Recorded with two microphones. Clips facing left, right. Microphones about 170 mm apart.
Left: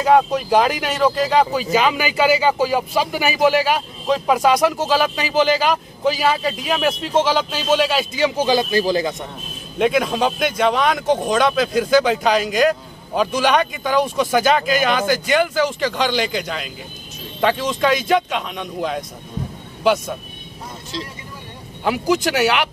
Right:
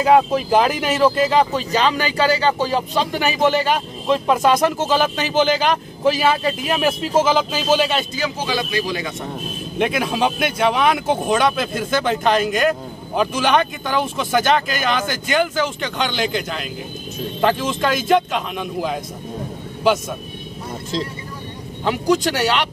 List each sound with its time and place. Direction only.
0.0 s speech: centre (ahead or behind)
8.5 s speech: 35° left (ahead or behind)
9.8 s speech: centre (ahead or behind)
21.8 s speech: 5° left (ahead or behind)